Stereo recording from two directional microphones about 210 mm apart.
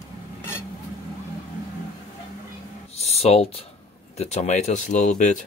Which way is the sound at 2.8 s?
30° left (ahead or behind).